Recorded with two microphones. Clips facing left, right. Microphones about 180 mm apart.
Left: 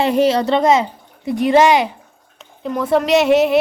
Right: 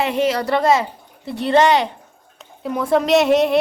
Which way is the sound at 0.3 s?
20° left (ahead or behind).